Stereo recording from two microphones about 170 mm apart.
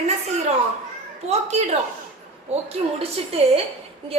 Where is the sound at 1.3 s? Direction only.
40° right (ahead or behind).